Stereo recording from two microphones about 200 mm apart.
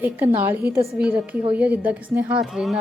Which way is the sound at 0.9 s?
5° right (ahead or behind).